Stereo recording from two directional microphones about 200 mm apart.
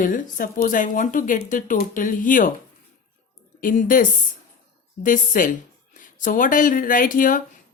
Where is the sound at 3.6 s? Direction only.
40° left (ahead or behind).